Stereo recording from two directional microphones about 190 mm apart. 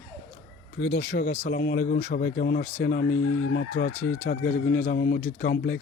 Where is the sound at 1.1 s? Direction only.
60° left (ahead or behind).